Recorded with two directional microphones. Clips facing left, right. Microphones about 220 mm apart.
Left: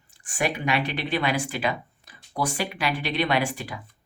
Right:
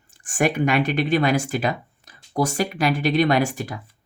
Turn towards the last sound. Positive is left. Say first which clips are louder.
# right 5 dB
turn(degrees=-45)  # may be behind; listen again after turning